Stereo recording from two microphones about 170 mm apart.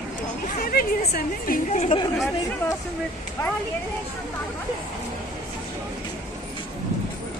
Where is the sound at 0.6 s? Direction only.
60° left (ahead or behind); by 2.0 s 40° left (ahead or behind).